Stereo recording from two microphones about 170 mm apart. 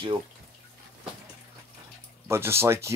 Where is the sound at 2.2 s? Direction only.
15° right (ahead or behind).